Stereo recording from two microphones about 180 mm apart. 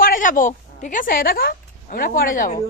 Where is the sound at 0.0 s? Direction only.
50° left (ahead or behind).